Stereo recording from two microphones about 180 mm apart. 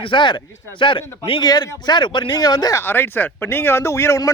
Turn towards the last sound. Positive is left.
turn(degrees=15)  # may be behind; listen again after turning